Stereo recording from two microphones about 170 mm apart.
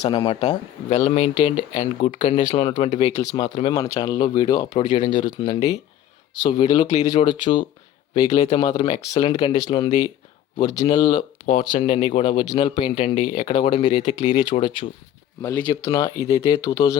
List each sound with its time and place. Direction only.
0.0 s speech: 30° left (ahead or behind)
0.9 s speech: 40° left (ahead or behind); by 4.9 s 25° left (ahead or behind)
4.9 s speech: 50° left (ahead or behind)
5.2 s speech: 25° left (ahead or behind)
15.4 s speech: 10° left (ahead or behind)